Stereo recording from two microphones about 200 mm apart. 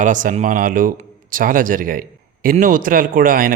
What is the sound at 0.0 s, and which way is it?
Speech, 40° right (ahead or behind).